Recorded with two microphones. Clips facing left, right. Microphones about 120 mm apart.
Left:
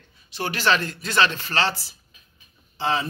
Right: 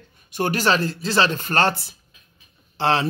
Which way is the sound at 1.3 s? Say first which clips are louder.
Right 4 dB; 50° right (ahead or behind).